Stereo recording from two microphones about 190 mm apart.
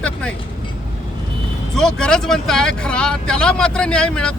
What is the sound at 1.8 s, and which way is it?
Speech, 5° left (ahead or behind).